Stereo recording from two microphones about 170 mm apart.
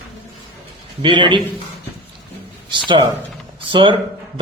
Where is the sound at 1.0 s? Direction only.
30° right (ahead or behind).